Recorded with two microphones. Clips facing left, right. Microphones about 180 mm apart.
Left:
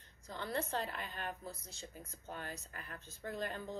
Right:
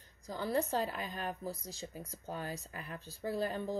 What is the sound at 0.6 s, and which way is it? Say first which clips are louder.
Speech: right 5 dB; 40° right (ahead or behind).